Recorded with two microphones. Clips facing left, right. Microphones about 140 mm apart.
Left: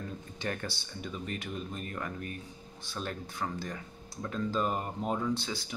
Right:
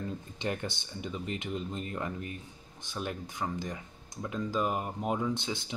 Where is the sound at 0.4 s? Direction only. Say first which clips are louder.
Right 1 dB; 20° right (ahead or behind).